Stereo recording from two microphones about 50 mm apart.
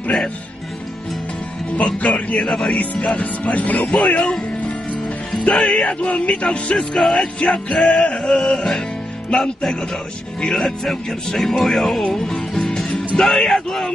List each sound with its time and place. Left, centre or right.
1.8 s speech: left
2.4 s speech: centre
2.8 s speech: left
3.8 s speech: centre
5.7 s speech: centre
7.0 s speech: centre
12.1 s music: centre
12.8 s music: left
13.2 s speech: centre